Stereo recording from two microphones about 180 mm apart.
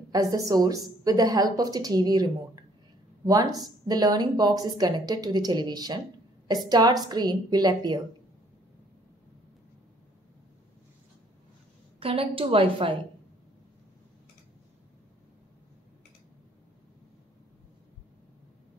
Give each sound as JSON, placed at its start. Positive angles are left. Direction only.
{"t": 0.1, "sound": "speech", "side_deg": -20}
{"t": 12.0, "sound": "a woman's voice", "side_deg": -30}